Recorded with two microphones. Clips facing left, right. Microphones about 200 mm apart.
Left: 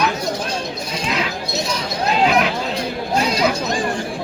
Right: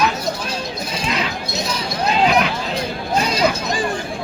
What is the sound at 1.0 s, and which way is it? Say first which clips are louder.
Chink: left 1 dB; centre (ahead or behind).